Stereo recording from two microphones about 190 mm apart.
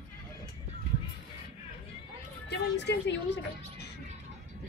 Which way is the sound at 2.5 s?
65° left (ahead or behind).